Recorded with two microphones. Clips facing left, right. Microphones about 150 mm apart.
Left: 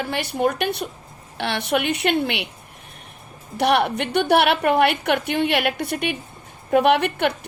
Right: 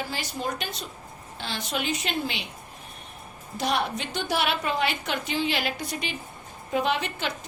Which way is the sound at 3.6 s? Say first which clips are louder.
Left 8 dB; 65° left (ahead or behind).